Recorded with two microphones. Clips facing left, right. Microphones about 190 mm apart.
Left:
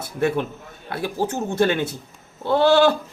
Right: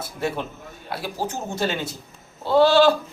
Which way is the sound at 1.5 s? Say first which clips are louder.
Left 7 dB; 55° left (ahead or behind).